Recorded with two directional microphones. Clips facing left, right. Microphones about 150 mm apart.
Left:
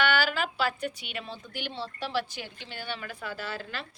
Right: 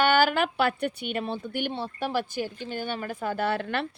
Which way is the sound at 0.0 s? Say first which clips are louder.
Right 5 dB; 50° right (ahead or behind).